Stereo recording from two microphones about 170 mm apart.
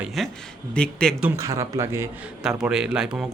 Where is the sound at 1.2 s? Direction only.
15° right (ahead or behind).